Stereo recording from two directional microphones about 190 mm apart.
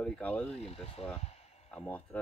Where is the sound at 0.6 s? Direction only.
30° left (ahead or behind).